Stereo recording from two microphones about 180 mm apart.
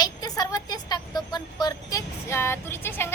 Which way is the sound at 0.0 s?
20° left (ahead or behind).